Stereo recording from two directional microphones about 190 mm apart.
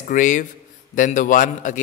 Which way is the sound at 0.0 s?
40° left (ahead or behind).